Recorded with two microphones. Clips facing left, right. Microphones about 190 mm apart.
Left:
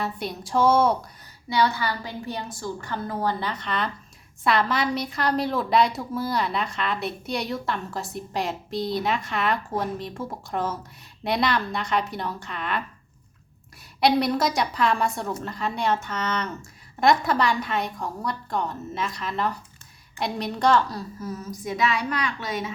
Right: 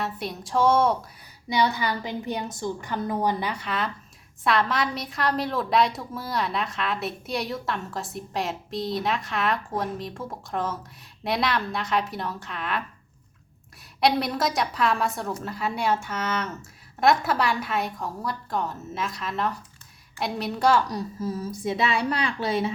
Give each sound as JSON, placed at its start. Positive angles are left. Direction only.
{"t": 0.0, "sound": "a woman's voice", "side_deg": 0}
{"t": 1.5, "sound": "a woman's voice", "side_deg": -15}
{"t": 14.0, "sound": "a woman's voice", "side_deg": 0}